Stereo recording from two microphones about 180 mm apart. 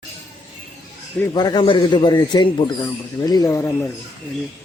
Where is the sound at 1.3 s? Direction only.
25° left (ahead or behind).